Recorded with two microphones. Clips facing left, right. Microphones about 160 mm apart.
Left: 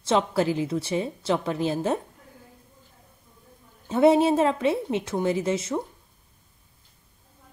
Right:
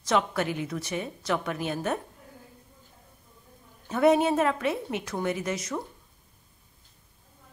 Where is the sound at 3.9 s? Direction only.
25° left (ahead or behind).